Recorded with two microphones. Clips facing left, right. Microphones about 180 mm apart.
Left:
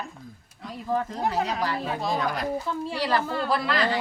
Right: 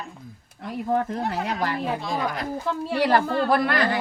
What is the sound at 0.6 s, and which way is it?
Speech, 60° right (ahead or behind).